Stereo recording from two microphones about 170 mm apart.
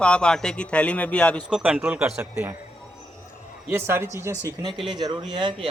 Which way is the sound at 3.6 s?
15° right (ahead or behind).